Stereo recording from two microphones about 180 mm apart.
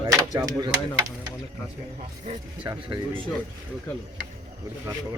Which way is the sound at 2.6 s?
25° right (ahead or behind).